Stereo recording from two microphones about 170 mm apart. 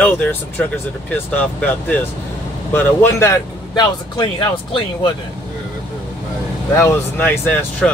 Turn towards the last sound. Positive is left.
turn(degrees=10)  # may be behind; listen again after turning